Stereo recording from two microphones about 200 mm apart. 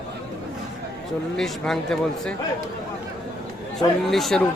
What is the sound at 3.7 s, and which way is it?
Speech, centre (ahead or behind).